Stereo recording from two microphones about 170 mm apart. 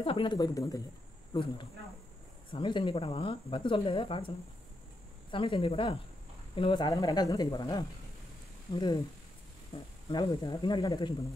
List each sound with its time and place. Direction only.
0.0 s speech: 30° left (ahead or behind)
5.3 s speech: 30° left (ahead or behind)